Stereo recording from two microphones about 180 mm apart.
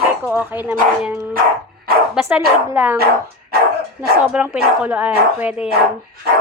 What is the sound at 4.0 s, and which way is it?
Speech, 10° right (ahead or behind).